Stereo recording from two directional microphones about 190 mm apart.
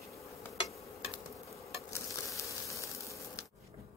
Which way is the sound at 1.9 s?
15° left (ahead or behind).